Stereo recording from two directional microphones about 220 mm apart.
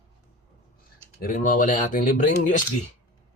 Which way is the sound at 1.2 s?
40° left (ahead or behind).